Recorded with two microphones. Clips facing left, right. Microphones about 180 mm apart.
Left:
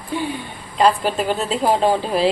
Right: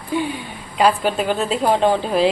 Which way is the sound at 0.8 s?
5° right (ahead or behind).